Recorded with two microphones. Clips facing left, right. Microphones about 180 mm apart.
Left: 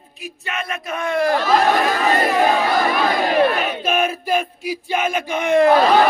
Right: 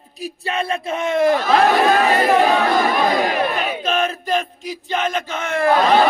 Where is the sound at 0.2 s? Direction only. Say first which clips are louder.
Right 5 dB; 35° right (ahead or behind).